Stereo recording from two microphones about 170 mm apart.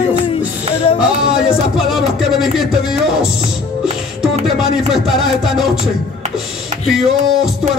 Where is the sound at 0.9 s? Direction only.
5° right (ahead or behind).